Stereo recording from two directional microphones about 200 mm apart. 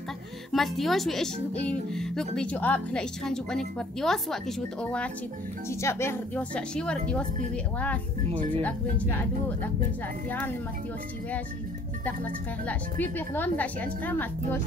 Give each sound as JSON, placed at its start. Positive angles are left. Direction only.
{"t": 0.5, "sound": "speech", "side_deg": 0}
{"t": 5.7, "sound": "a woman's voice", "side_deg": 15}
{"t": 13.0, "sound": "a woman's voice", "side_deg": 10}